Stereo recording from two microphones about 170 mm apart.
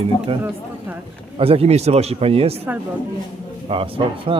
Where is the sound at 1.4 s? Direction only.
35° right (ahead or behind).